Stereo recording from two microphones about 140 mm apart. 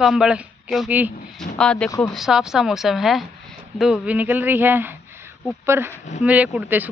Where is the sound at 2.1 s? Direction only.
5° right (ahead or behind).